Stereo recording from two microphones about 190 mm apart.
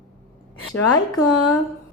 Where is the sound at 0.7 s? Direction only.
20° left (ahead or behind).